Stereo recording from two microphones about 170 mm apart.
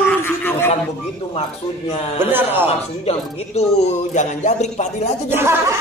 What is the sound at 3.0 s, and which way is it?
A man's voice, 40° left (ahead or behind).